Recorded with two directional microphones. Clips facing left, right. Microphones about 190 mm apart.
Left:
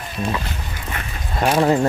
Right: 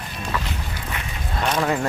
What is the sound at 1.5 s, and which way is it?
Speech, 30° left (ahead or behind).